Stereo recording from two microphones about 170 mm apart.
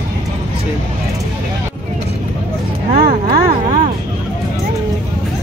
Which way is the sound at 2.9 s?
60° right (ahead or behind).